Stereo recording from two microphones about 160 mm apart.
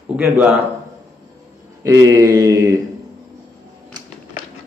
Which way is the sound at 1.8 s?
20° right (ahead or behind).